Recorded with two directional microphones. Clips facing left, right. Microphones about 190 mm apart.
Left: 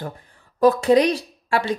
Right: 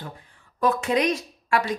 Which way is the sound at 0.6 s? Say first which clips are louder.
Left 7 dB; 35° left (ahead or behind).